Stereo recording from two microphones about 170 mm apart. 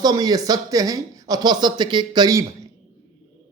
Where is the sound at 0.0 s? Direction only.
20° right (ahead or behind).